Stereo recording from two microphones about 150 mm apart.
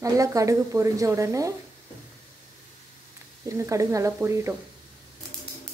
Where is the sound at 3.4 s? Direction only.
20° right (ahead or behind).